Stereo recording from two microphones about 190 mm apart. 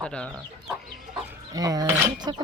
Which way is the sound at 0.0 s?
5° left (ahead or behind).